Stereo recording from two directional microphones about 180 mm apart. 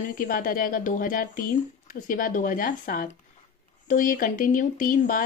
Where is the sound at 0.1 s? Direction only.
50° left (ahead or behind).